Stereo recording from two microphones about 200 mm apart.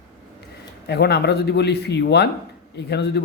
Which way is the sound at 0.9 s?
55° left (ahead or behind).